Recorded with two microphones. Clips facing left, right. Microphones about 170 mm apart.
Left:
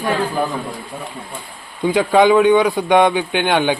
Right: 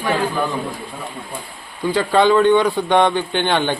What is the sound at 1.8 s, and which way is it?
Speech, 15° left (ahead or behind).